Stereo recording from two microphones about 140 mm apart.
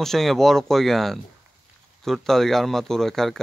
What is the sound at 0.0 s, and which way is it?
Speech, centre (ahead or behind).